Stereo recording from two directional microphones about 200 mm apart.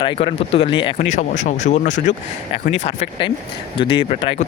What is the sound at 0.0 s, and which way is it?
Speech, 25° left (ahead or behind).